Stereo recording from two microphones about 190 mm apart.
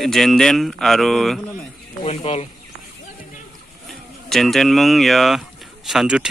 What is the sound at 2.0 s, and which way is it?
Speech, 35° left (ahead or behind).